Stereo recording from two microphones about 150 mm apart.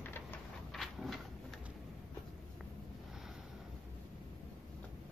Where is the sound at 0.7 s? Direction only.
Centre (ahead or behind).